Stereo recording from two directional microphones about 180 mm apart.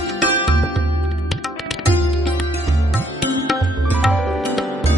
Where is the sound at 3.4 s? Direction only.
Centre (ahead or behind).